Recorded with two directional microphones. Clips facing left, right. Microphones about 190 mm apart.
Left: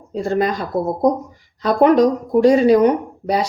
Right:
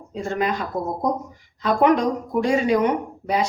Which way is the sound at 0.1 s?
35° left (ahead or behind).